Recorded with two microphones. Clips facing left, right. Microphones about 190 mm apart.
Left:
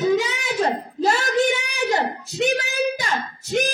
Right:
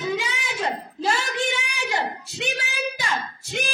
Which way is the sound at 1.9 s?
40° left (ahead or behind).